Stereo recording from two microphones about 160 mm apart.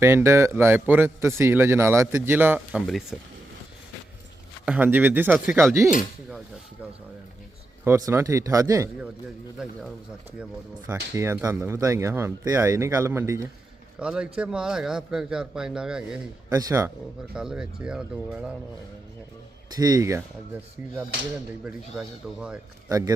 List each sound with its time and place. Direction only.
0.0 s a man's voice: 15° right (ahead or behind)
2.8 s a man's voice: centre (ahead or behind)
4.6 s a man's voice: 10° right (ahead or behind)
7.9 s speech: 20° right (ahead or behind)
10.8 s a man's voice: 15° right (ahead or behind)
14.0 s a man's voice: 5° right (ahead or behind)
16.5 s speech: 20° right (ahead or behind)
17.3 s a man's voice: 5° right (ahead or behind)
19.7 s speech: 25° right (ahead or behind)
21.6 s a man's voice: 5° right (ahead or behind)
22.9 s speech: 20° right (ahead or behind)